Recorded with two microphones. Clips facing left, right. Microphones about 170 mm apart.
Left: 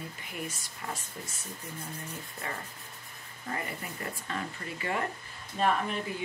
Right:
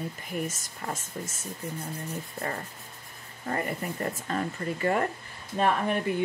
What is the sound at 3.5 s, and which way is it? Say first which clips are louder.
Speech: right 6 dB; 45° right (ahead or behind).